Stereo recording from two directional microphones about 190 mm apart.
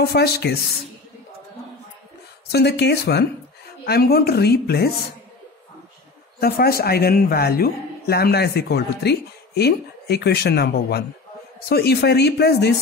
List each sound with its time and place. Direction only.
0.0 s a man's voice: 55° left (ahead or behind)
2.5 s a man's voice: 60° left (ahead or behind)
6.4 s a man's voice: 55° left (ahead or behind)